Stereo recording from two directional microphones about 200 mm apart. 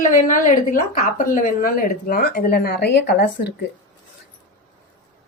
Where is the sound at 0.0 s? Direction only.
40° left (ahead or behind); by 3.5 s 55° left (ahead or behind).